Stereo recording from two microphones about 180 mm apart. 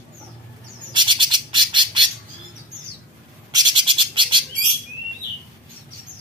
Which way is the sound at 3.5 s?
25° right (ahead or behind).